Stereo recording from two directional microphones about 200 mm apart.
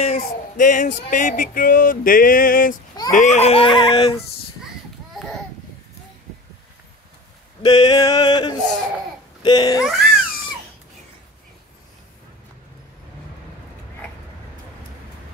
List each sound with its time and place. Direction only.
0.0 s a sound: 35° left (ahead or behind)
3.1 s speech: 35° left (ahead or behind)
7.6 s speech: 20° left (ahead or behind)
9.8 s babbling: 5° right (ahead or behind)